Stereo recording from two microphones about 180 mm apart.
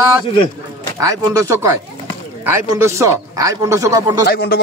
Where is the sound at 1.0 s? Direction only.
15° right (ahead or behind).